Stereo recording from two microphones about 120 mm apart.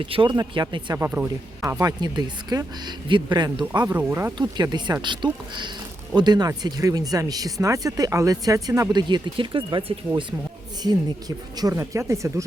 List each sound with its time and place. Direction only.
0.0 s speech: 45° right (ahead or behind)
0.3 s speech: 35° right (ahead or behind)
0.9 s speech: 20° right (ahead or behind)
1.7 s speech: 30° right (ahead or behind)
3.9 s speech: 20° right (ahead or behind)
4.4 s speech: 35° right (ahead or behind)
8.9 s speech: 35° right (ahead or behind)
11.5 s speech: 30° right (ahead or behind)